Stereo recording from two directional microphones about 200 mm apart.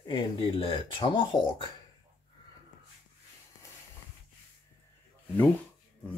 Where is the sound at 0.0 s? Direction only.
25° left (ahead or behind).